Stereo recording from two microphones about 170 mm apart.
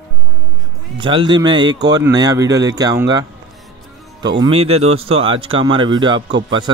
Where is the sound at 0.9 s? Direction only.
30° right (ahead or behind).